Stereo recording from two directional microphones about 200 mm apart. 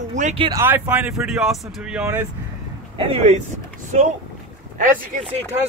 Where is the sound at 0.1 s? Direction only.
35° right (ahead or behind).